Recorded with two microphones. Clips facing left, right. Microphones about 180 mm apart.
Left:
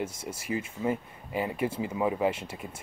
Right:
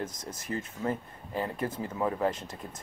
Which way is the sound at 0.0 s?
10° left (ahead or behind).